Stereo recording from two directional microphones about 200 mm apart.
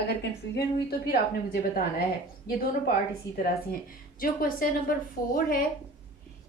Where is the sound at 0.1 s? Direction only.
55° left (ahead or behind).